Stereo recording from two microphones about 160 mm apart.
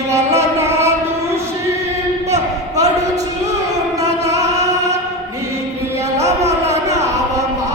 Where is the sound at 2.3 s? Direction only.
20° right (ahead or behind).